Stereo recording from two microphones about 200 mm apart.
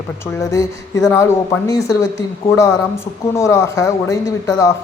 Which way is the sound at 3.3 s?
15° left (ahead or behind).